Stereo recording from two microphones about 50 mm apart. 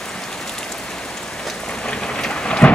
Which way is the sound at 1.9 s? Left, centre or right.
Centre.